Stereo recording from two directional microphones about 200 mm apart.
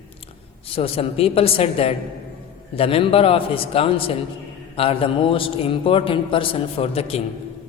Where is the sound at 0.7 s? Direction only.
30° left (ahead or behind).